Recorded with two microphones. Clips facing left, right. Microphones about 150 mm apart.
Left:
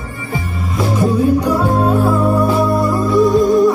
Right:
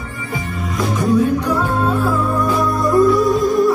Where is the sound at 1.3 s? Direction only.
10° left (ahead or behind).